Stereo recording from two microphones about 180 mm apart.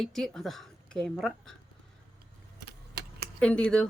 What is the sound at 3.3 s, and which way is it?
Speech, 5° left (ahead or behind).